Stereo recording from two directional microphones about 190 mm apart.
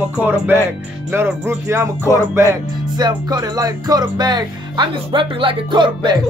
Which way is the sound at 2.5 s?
20° right (ahead or behind).